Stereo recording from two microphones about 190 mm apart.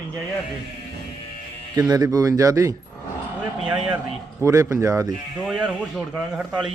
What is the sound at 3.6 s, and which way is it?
Speech, 5° right (ahead or behind).